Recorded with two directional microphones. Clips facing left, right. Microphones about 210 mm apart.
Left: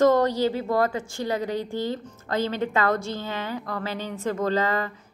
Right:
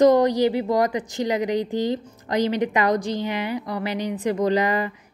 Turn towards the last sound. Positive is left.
turn(degrees=-15)  # may be behind; listen again after turning